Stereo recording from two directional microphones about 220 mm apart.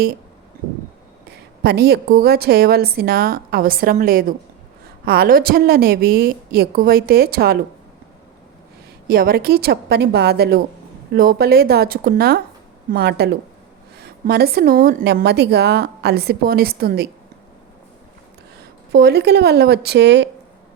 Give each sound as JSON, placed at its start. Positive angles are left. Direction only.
{"t": 1.3, "sound": "a woman's voice", "side_deg": -45}
{"t": 9.0, "sound": "a woman's voice", "side_deg": -45}
{"t": 18.9, "sound": "a woman's voice", "side_deg": -45}